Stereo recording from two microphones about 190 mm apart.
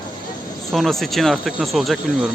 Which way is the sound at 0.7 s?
Centre (ahead or behind).